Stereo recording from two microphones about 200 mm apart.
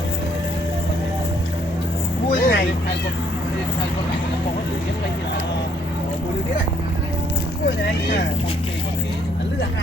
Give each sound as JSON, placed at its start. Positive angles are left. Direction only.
{"t": 2.3, "sound": "vehicle", "side_deg": 45}